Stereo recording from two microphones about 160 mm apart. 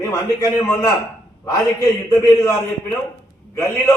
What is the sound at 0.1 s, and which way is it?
Speech, 20° left (ahead or behind).